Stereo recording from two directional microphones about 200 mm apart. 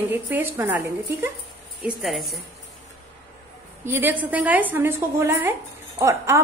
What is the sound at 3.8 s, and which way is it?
A woman's voice, 10° right (ahead or behind).